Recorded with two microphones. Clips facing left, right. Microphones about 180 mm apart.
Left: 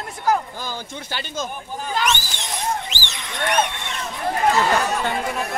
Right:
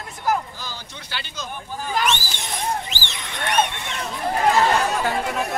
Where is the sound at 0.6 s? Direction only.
50° left (ahead or behind).